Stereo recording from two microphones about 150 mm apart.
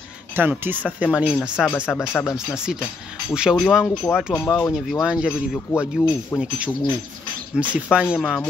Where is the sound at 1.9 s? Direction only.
5° left (ahead or behind).